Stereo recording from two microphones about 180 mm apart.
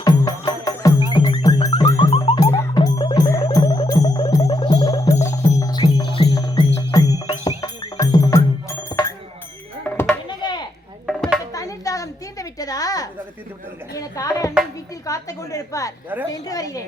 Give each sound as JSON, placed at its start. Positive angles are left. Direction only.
{"t": 0.0, "sound": "music", "side_deg": 20}
{"t": 10.2, "sound": "chop", "side_deg": 25}
{"t": 11.0, "sound": "music", "side_deg": 0}
{"t": 11.5, "sound": "a sound", "side_deg": 20}